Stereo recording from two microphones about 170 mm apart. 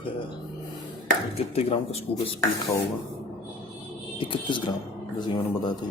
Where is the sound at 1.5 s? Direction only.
35° left (ahead or behind).